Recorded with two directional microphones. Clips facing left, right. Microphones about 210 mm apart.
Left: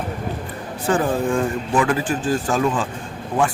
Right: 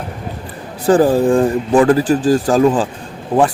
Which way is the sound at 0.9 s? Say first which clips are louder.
Right 8 dB; 35° right (ahead or behind).